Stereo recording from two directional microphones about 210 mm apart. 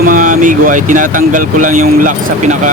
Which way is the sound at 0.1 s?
40° right (ahead or behind).